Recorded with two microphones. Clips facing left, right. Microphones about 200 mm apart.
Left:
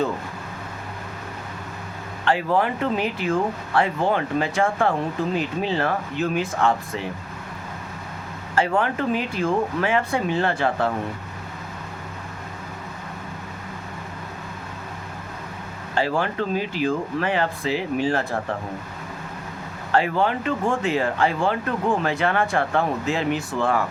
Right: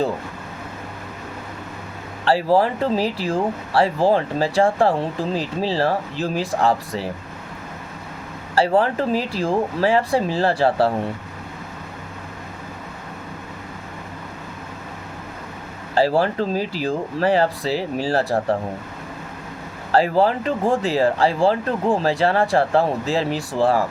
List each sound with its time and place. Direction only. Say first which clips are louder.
2.2 s speech: right 4 dB; 35° right (ahead or behind)
8.5 s speech: right 4 dB; 35° right (ahead or behind)
16.0 s speech: right 5 dB; 35° right (ahead or behind)
19.9 s speech: right 4 dB; 35° right (ahead or behind)